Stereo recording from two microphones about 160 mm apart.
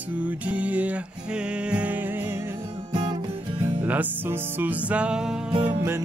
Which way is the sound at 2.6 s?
35° right (ahead or behind).